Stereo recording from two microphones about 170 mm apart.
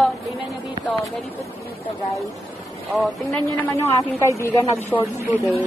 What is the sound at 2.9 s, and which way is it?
Speech, centre (ahead or behind).